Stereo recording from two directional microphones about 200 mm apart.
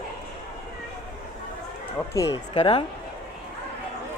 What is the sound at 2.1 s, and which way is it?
Speech, 15° left (ahead or behind).